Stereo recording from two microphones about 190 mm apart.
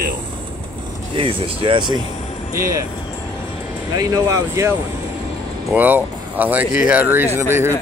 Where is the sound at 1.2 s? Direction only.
30° right (ahead or behind).